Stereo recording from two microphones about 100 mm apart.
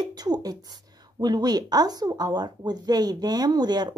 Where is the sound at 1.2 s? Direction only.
45° right (ahead or behind).